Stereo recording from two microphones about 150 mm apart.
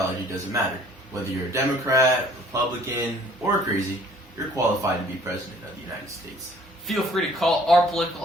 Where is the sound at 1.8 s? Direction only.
20° right (ahead or behind).